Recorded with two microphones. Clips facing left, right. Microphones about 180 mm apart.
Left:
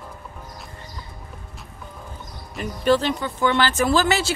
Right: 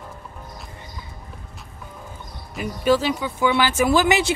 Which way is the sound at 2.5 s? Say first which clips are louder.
Even; 10° right (ahead or behind).